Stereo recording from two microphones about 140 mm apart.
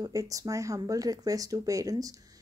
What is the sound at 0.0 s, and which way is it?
Speech, 25° right (ahead or behind).